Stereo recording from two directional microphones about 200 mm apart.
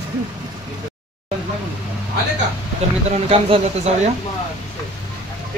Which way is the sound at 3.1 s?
30° right (ahead or behind).